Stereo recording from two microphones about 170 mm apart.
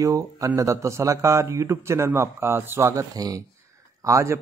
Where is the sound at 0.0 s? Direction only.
20° right (ahead or behind).